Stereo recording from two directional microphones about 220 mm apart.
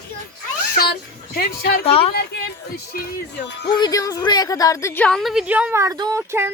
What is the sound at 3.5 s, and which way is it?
Speech, 50° left (ahead or behind).